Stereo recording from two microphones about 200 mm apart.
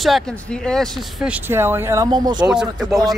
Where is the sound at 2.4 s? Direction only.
5° right (ahead or behind).